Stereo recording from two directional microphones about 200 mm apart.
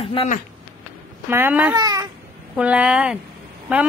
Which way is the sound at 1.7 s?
20° right (ahead or behind).